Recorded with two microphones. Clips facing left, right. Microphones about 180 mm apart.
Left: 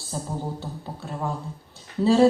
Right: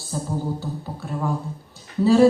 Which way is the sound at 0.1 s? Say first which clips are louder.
Right 3 dB; 25° left (ahead or behind).